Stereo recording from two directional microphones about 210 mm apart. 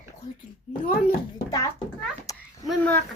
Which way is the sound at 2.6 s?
5° left (ahead or behind).